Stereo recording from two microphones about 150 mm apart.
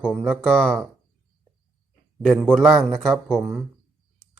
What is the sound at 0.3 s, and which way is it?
Speech, 5° left (ahead or behind).